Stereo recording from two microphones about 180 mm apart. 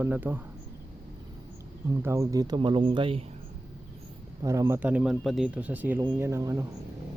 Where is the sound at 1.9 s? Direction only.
15° right (ahead or behind).